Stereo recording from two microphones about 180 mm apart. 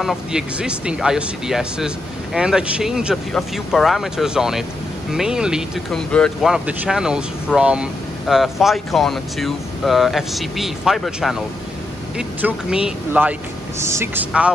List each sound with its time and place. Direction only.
0.0 s speech: centre (ahead or behind)